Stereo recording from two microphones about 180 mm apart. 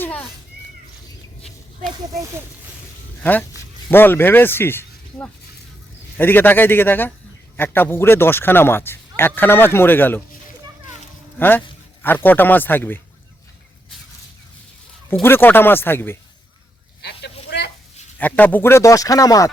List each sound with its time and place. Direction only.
0.0 s cat: 10° left (ahead or behind)
3.2 s speech: 10° left (ahead or behind)
11.3 s speech: 10° left (ahead or behind)
15.2 s speech: 10° left (ahead or behind)
17.0 s a sound: 65° left (ahead or behind)
18.2 s speech: 10° left (ahead or behind)